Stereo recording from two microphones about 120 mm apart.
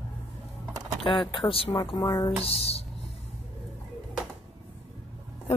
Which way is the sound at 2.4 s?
55° left (ahead or behind).